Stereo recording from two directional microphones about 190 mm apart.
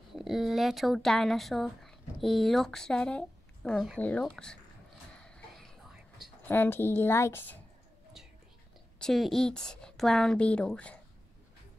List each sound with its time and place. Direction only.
0.1 s a woman's voice: centre (ahead or behind)
5.2 s whispering: 5° left (ahead or behind)
6.5 s speech: 10° left (ahead or behind)
9.0 s a woman's voice: centre (ahead or behind)